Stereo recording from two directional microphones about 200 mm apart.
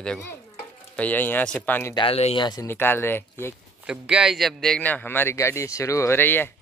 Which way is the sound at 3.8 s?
5° right (ahead or behind).